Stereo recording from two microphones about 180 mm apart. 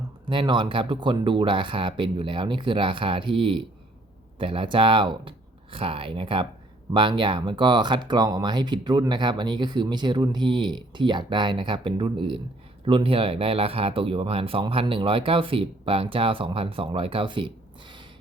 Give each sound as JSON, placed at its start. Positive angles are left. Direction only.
{"t": 0.3, "sound": "speech", "side_deg": -25}